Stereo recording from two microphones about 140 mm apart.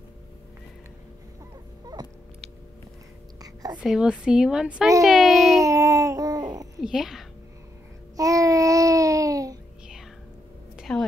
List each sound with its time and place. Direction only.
1.9 s a sound: 30° right (ahead or behind)
3.8 s speech: 5° right (ahead or behind)
5.6 s babbling: 25° right (ahead or behind)
6.8 s speech: 5° right (ahead or behind)
8.2 s babbling: 25° right (ahead or behind)
10.8 s a sound: centre (ahead or behind)